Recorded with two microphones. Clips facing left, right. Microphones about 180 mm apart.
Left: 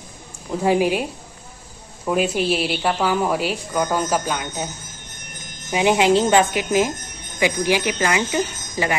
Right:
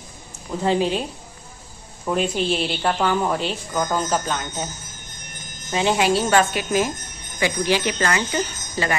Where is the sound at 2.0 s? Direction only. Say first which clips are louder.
Left 2 dB; 5° left (ahead or behind).